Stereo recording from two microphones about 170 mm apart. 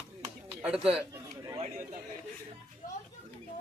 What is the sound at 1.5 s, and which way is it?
Chatter, 45° right (ahead or behind).